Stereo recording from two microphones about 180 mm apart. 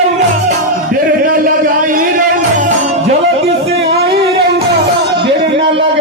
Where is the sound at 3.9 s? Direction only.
65° right (ahead or behind).